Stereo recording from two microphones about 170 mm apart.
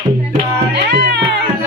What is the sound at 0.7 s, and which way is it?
Music, 90° right.